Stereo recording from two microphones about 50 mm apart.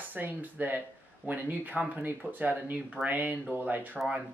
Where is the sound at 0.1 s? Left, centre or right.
Right.